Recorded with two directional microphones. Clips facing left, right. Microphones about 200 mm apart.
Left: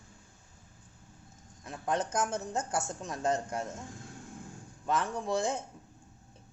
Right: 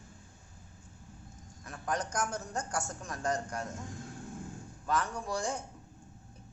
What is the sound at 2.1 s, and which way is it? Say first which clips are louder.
Speech: left 3 dB; 25° left (ahead or behind).